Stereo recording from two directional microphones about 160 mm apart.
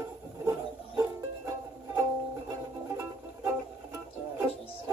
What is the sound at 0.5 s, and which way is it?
Music, 20° right (ahead or behind).